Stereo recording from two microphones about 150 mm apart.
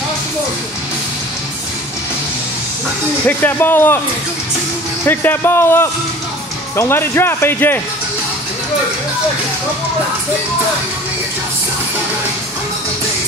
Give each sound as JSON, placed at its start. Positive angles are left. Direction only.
{"t": 3.3, "sound": "speech", "side_deg": 10}
{"t": 5.0, "sound": "speech", "side_deg": 15}